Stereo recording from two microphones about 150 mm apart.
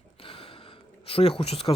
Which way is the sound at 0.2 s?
35° left (ahead or behind).